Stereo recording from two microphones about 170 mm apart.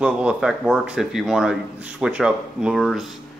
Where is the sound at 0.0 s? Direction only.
5° right (ahead or behind).